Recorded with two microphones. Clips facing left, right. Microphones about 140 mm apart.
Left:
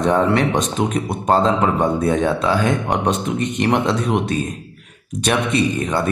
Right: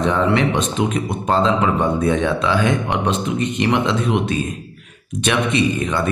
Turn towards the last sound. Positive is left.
turn(degrees=40)  # may be behind; listen again after turning